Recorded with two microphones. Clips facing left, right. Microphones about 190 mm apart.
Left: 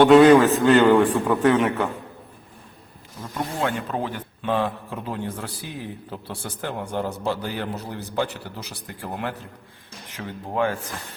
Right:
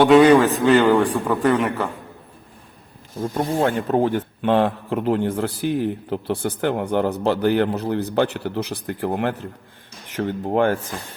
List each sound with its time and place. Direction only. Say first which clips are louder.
0.0 s speech: even; centre (ahead or behind)
3.3 s speech: right 5 dB; 45° right (ahead or behind); by 10.8 s 60° right (ahead or behind)